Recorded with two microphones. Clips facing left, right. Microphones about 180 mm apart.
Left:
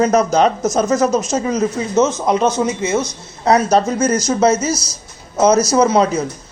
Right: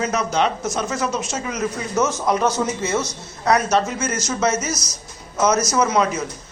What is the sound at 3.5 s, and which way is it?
Speech, 30° left (ahead or behind).